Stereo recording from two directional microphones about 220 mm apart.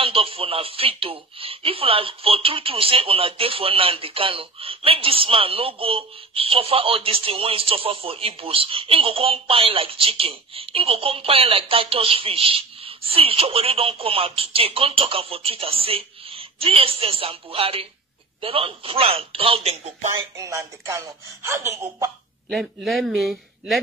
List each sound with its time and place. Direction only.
0.0 s speech: 25° right (ahead or behind)
20.3 s speech: 15° right (ahead or behind)
22.5 s a man's voice: centre (ahead or behind)